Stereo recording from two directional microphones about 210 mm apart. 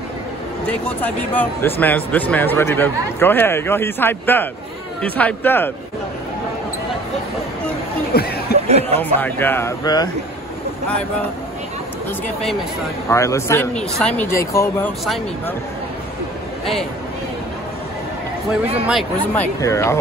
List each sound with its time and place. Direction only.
0.7 s speech: 5° left (ahead or behind)
8.1 s chatter: 50° left (ahead or behind)
8.6 s speech: 30° right (ahead or behind)
9.2 s speech: 10° left (ahead or behind)
13.1 s speech: 15° left (ahead or behind)
19.3 s speech: 10° left (ahead or behind)